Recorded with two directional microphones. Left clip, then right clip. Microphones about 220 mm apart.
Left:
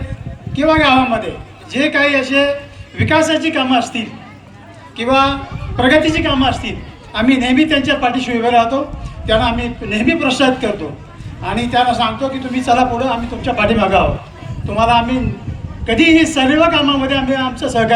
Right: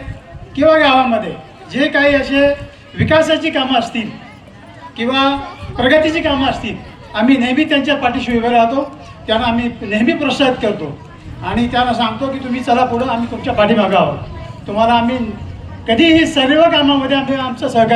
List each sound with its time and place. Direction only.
0.5 s a woman's voice: 20° left (ahead or behind)